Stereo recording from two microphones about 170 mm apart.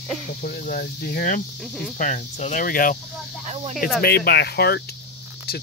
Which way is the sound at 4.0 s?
65° left (ahead or behind).